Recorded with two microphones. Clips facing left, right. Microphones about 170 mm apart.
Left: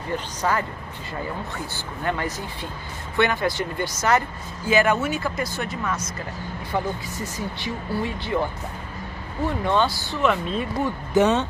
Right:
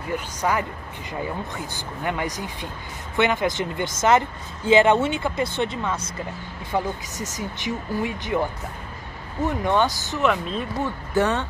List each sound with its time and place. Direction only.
0.1 s speech: 10° right (ahead or behind)
2.0 s speech: 15° right (ahead or behind)
6.7 s speech: 15° right (ahead or behind)
9.5 s speech: 15° right (ahead or behind)
10.2 s speech: centre (ahead or behind)
11.1 s speech: 20° left (ahead or behind)